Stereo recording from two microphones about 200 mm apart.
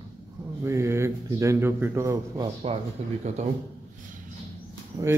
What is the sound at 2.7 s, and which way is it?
Speech, 30° right (ahead or behind).